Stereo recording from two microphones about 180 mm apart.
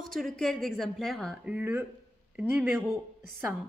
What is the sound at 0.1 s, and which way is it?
A woman's voice, centre (ahead or behind).